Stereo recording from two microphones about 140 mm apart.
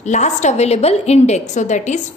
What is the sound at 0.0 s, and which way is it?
A woman's voice, 55° left (ahead or behind).